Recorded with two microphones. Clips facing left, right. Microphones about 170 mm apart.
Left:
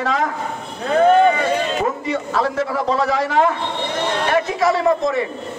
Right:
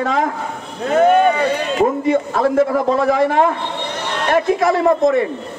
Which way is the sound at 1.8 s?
50° right (ahead or behind).